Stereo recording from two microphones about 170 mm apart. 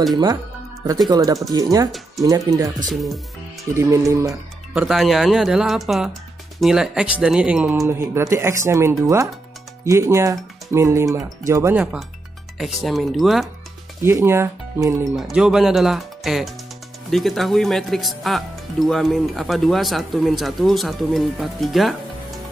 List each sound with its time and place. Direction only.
1.0 s speech: 20° right (ahead or behind)
2.9 s speech: centre (ahead or behind)
3.7 s speech: 15° right (ahead or behind)
4.3 s speech: centre (ahead or behind)
7.8 s speech: 15° right (ahead or behind)
12.5 s speech: centre (ahead or behind)
14.0 s speech: 15° right (ahead or behind)
15.0 s speech: centre (ahead or behind)